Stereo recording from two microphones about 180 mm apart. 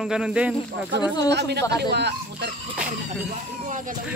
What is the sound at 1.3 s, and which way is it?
Speech, 70° right (ahead or behind).